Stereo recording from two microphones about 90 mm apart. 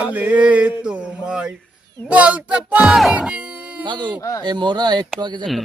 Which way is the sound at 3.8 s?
55° right (ahead or behind).